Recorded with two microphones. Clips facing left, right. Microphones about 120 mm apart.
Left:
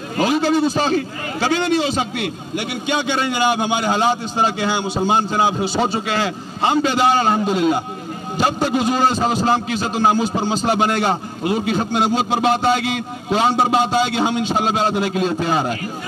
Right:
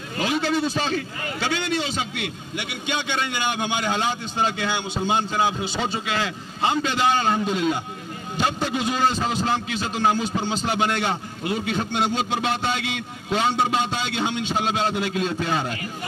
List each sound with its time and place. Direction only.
0.1 s a man's voice: 40° left (ahead or behind)